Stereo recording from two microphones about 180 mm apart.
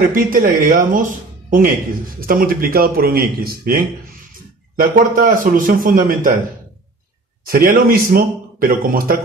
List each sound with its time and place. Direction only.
0.1 s speech: 50° right (ahead or behind)
2.1 s a man's voice: 55° right (ahead or behind)
7.4 s speech: 55° right (ahead or behind)